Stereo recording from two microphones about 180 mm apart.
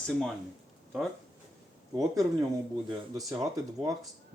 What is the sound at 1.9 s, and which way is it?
Speech, 20° right (ahead or behind).